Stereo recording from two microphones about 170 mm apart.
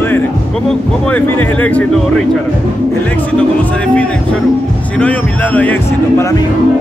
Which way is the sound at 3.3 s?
5° left (ahead or behind).